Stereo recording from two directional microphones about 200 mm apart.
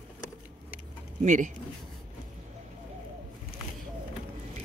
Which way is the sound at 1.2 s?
40° right (ahead or behind).